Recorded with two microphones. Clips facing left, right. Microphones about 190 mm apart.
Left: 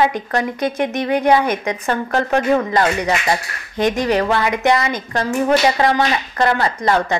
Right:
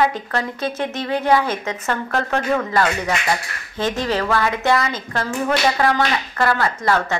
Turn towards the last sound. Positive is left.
turn(degrees=20)  # may be behind; listen again after turning